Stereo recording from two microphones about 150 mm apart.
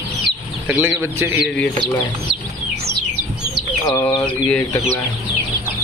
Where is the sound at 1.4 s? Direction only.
5° left (ahead or behind).